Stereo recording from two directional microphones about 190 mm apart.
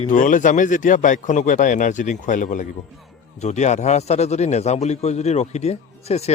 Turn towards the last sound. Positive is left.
turn(degrees=35)  # may be behind; listen again after turning